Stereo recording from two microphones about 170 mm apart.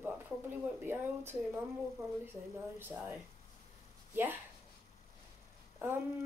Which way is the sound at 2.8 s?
10° right (ahead or behind).